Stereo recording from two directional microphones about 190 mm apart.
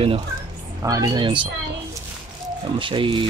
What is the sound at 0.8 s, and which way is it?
A child's voice, 20° right (ahead or behind).